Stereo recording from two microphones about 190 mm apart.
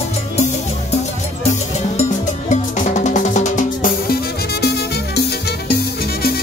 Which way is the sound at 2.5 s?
40° left (ahead or behind).